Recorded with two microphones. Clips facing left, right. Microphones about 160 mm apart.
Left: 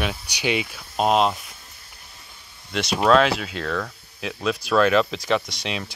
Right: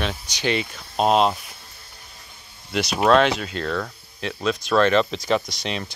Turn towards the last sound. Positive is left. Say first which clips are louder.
# right 1 dB
turn(degrees=0)  # may be behind; listen again after turning